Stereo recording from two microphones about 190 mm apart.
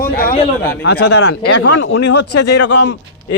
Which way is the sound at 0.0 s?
50° left (ahead or behind).